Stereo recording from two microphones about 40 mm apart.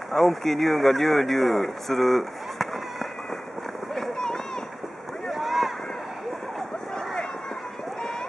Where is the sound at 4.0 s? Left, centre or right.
Centre.